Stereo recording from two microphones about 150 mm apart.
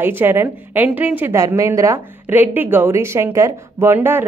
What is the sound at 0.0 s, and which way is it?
A woman's voice, 15° right (ahead or behind).